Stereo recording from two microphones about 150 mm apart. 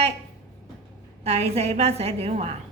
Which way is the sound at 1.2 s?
45° right (ahead or behind).